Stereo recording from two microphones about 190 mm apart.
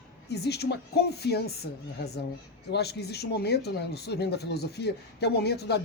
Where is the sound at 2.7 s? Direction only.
60° left (ahead or behind).